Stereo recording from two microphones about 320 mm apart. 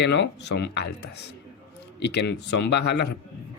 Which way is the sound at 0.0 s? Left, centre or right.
Left.